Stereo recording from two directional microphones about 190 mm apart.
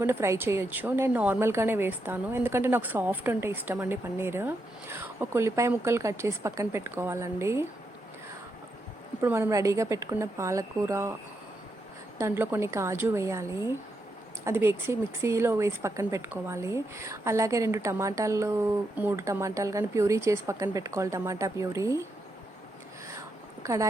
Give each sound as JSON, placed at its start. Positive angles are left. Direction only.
{"t": 0.0, "sound": "a woman's voice", "side_deg": -15}
{"t": 9.2, "sound": "a woman's voice", "side_deg": -10}
{"t": 12.1, "sound": "a woman's voice", "side_deg": -15}
{"t": 23.6, "sound": "a woman's voice", "side_deg": -15}